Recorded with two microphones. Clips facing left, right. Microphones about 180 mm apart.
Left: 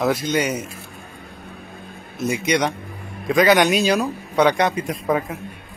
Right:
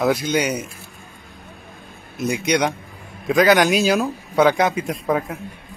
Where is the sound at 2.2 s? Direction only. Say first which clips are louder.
Right 1 dB; centre (ahead or behind).